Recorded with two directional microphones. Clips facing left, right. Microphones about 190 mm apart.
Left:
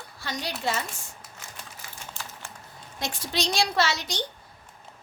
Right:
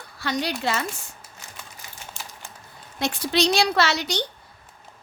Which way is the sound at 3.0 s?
65° right (ahead or behind).